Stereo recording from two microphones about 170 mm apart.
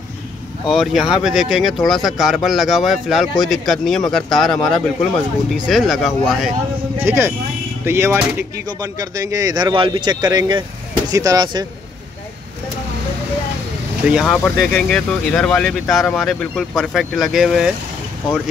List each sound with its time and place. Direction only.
0.7 s speech: centre (ahead or behind)
7.0 s speech: 15° right (ahead or behind)
14.0 s speech: centre (ahead or behind)